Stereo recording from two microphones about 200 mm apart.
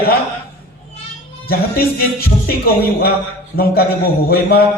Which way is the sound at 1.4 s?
50° left (ahead or behind).